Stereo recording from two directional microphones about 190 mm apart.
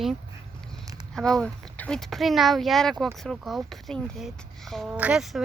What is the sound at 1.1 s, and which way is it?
Speech, centre (ahead or behind).